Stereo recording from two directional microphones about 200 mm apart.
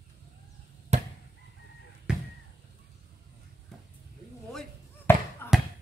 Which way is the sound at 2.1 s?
5° right (ahead or behind).